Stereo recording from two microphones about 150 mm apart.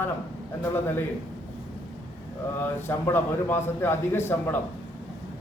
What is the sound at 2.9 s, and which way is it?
A man's voice, 15° left (ahead or behind).